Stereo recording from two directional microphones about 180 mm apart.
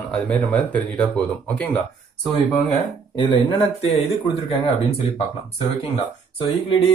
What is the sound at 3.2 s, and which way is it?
Speech, 25° left (ahead or behind).